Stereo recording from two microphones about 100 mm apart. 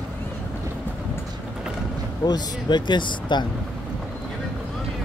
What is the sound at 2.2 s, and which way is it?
Speech, 45° left (ahead or behind).